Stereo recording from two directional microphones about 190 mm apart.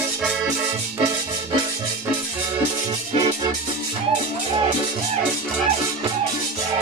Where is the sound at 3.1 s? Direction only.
30° right (ahead or behind).